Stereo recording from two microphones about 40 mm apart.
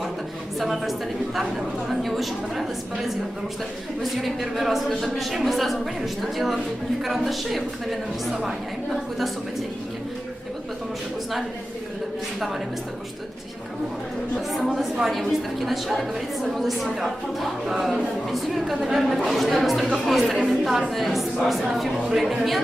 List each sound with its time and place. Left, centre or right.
0.6 s a woman's voice: centre
15.0 s a woman's voice: centre